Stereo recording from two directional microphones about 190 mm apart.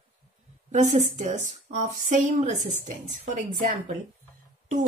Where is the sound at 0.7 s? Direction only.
40° right (ahead or behind).